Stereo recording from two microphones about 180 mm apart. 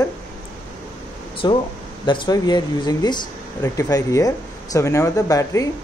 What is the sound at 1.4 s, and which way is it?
Speech, 25° left (ahead or behind).